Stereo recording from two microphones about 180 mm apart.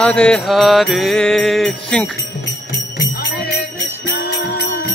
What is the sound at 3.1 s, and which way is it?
Jingle bell, 60° left (ahead or behind).